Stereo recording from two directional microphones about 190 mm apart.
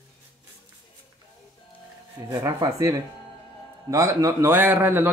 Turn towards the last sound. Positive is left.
turn(degrees=-10)  # may be behind; listen again after turning